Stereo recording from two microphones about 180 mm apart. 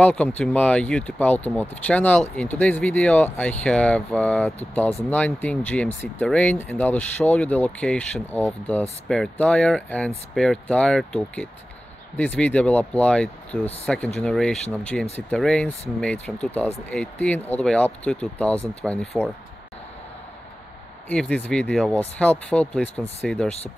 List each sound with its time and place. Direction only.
0.0 s speech: 5° left (ahead or behind)
21.1 s speech: 5° left (ahead or behind)